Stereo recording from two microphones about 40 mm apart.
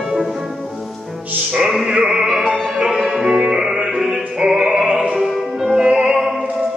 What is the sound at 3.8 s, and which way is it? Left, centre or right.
Music, centre.